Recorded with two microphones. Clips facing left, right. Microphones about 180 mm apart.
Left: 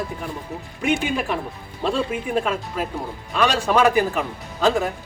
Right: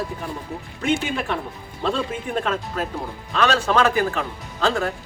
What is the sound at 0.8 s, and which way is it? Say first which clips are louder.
Speech: left 1 dB; 15° left (ahead or behind).